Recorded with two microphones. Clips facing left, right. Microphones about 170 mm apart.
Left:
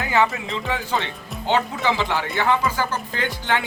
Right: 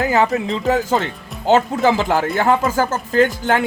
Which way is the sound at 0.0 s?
40° right (ahead or behind).